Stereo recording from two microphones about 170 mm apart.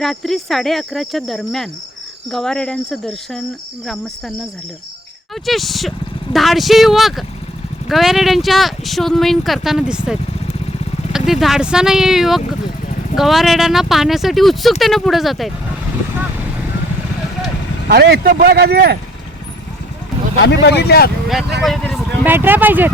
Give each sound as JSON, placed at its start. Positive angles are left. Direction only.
{"t": 0.0, "sound": "speech", "side_deg": 0}
{"t": 5.5, "sound": "speech", "side_deg": 0}
{"t": 11.3, "sound": "speech", "side_deg": 0}
{"t": 17.8, "sound": "speech", "side_deg": -75}
{"t": 20.4, "sound": "speech", "side_deg": 90}
{"t": 21.6, "sound": "speech", "side_deg": 0}
{"t": 22.2, "sound": "speech", "side_deg": -10}